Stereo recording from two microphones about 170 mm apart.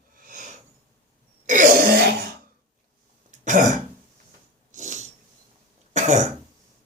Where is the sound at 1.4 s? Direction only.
50° right (ahead or behind).